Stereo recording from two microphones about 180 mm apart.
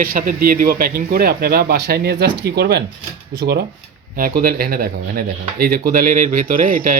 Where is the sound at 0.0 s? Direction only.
50° right (ahead or behind).